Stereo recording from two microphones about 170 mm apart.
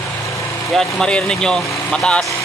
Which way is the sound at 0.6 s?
Centre (ahead or behind).